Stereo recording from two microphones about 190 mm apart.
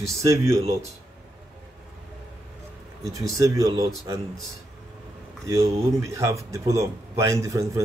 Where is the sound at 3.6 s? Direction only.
20° right (ahead or behind).